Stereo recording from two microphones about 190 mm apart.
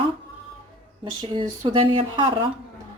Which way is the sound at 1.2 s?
25° right (ahead or behind).